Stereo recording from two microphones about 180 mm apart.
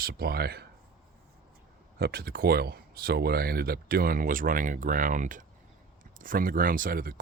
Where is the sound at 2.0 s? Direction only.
60° right (ahead or behind).